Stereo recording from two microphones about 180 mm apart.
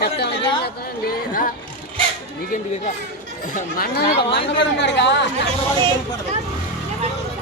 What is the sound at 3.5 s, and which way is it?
Speech, 60° left (ahead or behind).